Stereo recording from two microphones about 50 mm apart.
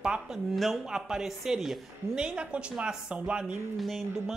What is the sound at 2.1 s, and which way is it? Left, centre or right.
Speech, right.